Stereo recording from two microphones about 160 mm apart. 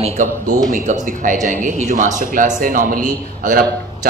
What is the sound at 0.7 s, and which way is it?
Speech, 50° right (ahead or behind).